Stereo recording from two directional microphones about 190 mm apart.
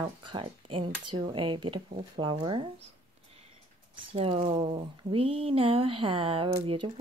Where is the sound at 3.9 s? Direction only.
30° right (ahead or behind).